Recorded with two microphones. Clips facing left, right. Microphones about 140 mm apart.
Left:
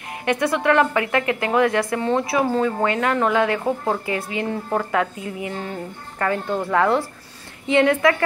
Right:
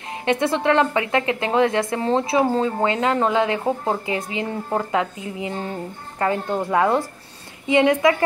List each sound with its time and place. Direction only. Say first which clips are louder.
0.2 s a woman's voice: right 1 dB; 25° right (ahead or behind)